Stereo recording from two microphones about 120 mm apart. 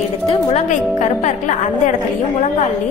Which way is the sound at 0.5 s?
75° left (ahead or behind).